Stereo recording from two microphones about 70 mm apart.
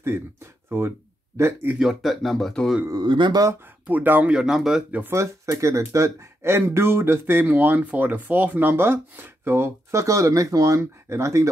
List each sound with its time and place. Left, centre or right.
0.7 s speech: right
1.8 s speech: centre
2.9 s speech: right
3.8 s speech: right; by 4.8 s centre
5.1 s speech: right